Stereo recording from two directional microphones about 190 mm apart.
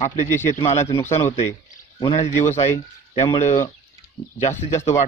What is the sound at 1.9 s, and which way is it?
Speech, 25° left (ahead or behind).